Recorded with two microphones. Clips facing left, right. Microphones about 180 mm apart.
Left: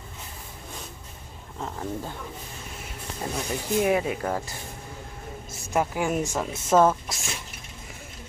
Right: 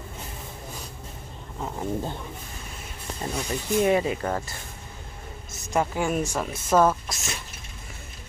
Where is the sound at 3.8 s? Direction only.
5° left (ahead or behind).